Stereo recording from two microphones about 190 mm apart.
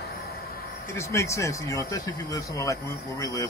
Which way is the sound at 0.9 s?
15° left (ahead or behind).